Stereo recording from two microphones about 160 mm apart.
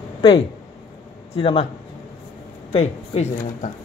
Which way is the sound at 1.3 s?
35° left (ahead or behind).